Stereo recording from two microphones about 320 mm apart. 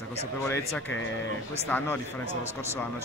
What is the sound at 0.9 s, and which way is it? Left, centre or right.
Speech, left.